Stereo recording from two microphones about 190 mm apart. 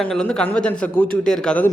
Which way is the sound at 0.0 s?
5° left (ahead or behind).